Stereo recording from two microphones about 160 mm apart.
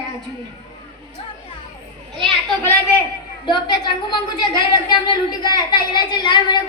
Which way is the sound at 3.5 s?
30° left (ahead or behind).